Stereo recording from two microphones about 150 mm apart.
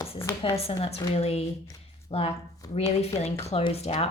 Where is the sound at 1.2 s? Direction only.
45° left (ahead or behind).